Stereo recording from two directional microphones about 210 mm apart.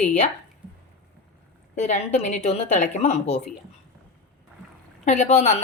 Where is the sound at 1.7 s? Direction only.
35° left (ahead or behind).